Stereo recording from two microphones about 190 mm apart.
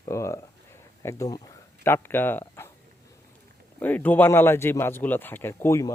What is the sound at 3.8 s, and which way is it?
A man's voice, 10° left (ahead or behind).